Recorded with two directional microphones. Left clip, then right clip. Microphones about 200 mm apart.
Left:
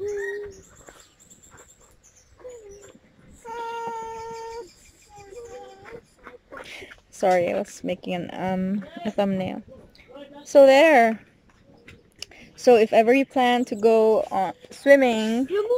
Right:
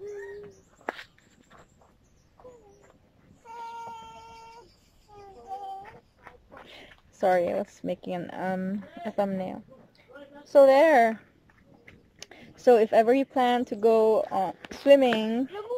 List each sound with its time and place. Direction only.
3.4 s synthetic singing: 60° left (ahead or behind)
6.7 s a woman's voice: 5° left (ahead or behind)